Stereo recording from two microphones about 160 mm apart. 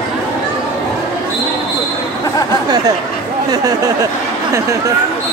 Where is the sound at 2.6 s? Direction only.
25° right (ahead or behind).